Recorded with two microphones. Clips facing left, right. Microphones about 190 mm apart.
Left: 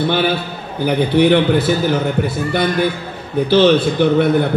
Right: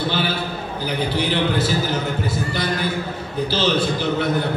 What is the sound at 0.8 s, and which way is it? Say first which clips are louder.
A man's voice: left 10 dB; 60° left (ahead or behind).